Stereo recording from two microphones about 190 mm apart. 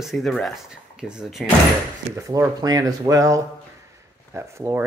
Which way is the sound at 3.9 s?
15° right (ahead or behind).